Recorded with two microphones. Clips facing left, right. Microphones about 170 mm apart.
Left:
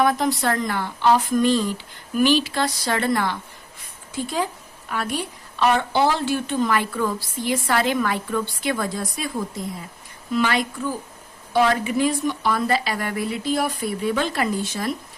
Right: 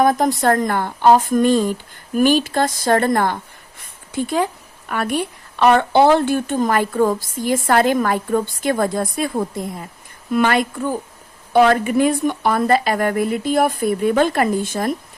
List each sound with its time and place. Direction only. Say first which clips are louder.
0.0 s a woman's voice: right 5 dB; 45° right (ahead or behind)
4.9 s a woman's voice: right 5 dB; 55° right (ahead or behind)
10.3 s a woman's voice: right 5 dB; 55° right (ahead or behind)